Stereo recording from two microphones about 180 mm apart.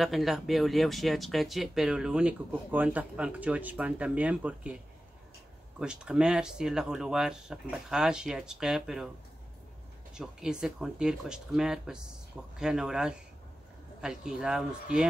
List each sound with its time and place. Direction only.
0.0 s speech: centre (ahead or behind)
5.8 s speech: 5° right (ahead or behind)
10.1 s speech: 5° right (ahead or behind)